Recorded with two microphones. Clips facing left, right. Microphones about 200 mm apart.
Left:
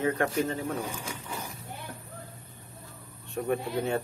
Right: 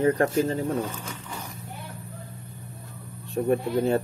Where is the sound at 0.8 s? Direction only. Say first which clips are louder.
Right 2 dB; 10° left (ahead or behind).